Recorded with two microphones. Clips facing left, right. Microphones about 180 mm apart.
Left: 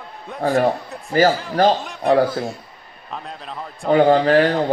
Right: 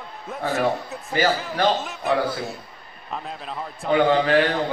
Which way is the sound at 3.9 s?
40° left (ahead or behind).